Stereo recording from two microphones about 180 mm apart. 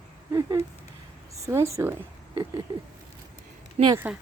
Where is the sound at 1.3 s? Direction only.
15° right (ahead or behind).